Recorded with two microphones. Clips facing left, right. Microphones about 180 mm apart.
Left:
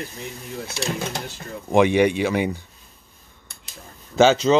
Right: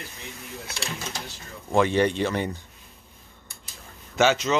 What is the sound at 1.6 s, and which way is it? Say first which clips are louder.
Speech: left 4 dB; 15° left (ahead or behind).